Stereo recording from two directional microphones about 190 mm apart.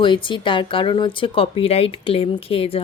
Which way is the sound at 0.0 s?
25° left (ahead or behind).